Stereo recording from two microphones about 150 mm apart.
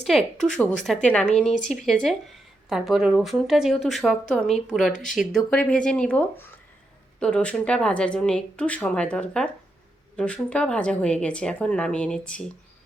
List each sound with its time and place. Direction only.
0.1 s a woman's voice: centre (ahead or behind)
1.5 s speech: 55° left (ahead or behind)
1.8 s a woman's voice: 5° left (ahead or behind)